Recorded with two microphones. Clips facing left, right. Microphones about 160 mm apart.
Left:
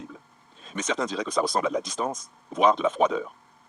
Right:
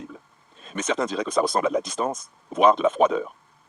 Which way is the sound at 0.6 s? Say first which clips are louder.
Right 3 dB; 55° right (ahead or behind).